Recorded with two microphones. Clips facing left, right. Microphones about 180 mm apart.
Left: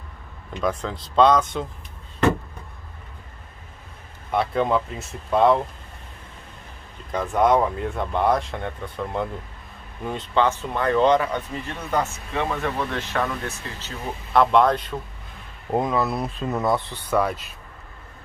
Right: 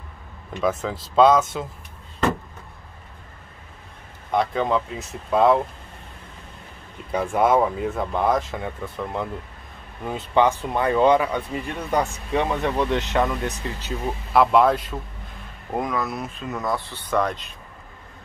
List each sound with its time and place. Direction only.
0.8 s speech: 5° right (ahead or behind)
4.3 s speech: 5° left (ahead or behind)
7.1 s speech: 10° right (ahead or behind)
14.3 s speech: 5° right (ahead or behind)
15.7 s speech: 25° left (ahead or behind)
17.1 s speech: 5° left (ahead or behind)